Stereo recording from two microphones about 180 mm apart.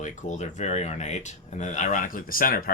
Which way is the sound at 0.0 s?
45° left (ahead or behind).